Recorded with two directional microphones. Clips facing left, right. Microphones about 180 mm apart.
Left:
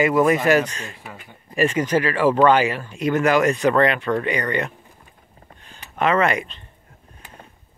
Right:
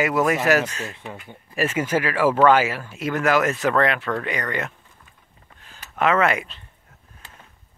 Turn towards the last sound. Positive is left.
turn(degrees=-5)  # may be behind; listen again after turning